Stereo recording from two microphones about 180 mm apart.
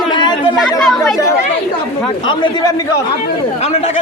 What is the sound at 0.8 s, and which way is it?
Chatter, centre (ahead or behind).